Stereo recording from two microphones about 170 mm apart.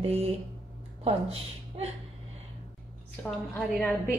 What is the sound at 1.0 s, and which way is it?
Speech, 35° right (ahead or behind).